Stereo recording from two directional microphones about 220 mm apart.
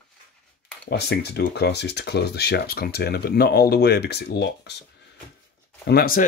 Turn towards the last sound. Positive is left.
turn(degrees=45)  # may be behind; listen again after turning